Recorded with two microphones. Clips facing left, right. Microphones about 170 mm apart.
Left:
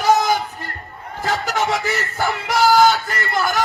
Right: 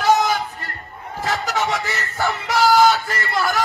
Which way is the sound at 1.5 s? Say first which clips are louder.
Left 2 dB; centre (ahead or behind).